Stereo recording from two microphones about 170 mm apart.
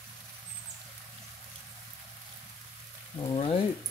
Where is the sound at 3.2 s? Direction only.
30° left (ahead or behind).